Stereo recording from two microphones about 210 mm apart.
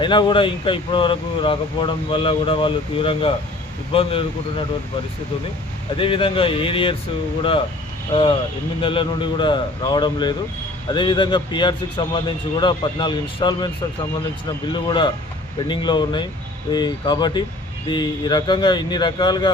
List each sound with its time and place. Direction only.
0.0 s speech: 20° left (ahead or behind)
6.0 s speech: 25° left (ahead or behind)
8.1 s speech: 25° left (ahead or behind)
14.7 s speech: 20° left (ahead or behind)